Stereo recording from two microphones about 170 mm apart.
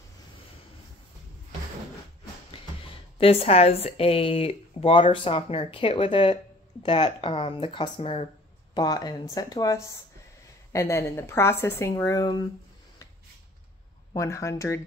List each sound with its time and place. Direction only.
3.2 s speech: 35° left (ahead or behind)
8.7 s a woman's voice: 25° left (ahead or behind)
14.1 s a woman's voice: 15° left (ahead or behind)